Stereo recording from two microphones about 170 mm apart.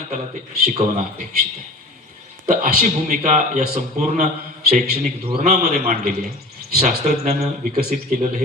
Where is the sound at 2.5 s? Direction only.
50° right (ahead or behind).